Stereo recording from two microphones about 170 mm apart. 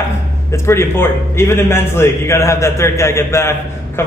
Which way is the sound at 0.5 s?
15° left (ahead or behind).